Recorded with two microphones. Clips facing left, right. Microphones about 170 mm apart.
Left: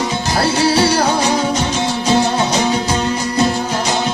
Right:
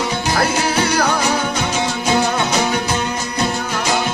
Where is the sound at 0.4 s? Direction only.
30° left (ahead or behind).